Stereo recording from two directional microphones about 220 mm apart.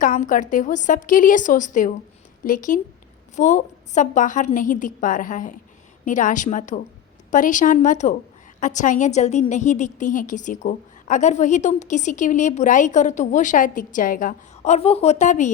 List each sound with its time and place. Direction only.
0.0 s a woman's voice: 35° left (ahead or behind)